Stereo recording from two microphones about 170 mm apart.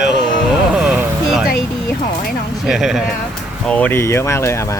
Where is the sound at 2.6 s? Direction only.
Centre (ahead or behind).